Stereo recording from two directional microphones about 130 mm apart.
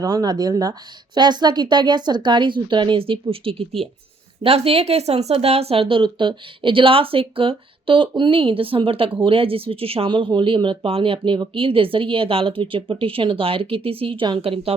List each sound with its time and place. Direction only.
0.0 s a woman's voice: 30° right (ahead or behind); by 14.8 s 50° right (ahead or behind)